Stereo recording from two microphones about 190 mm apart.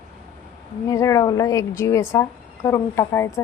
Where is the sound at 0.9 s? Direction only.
15° left (ahead or behind).